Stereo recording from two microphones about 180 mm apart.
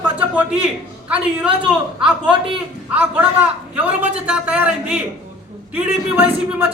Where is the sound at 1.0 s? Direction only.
10° right (ahead or behind).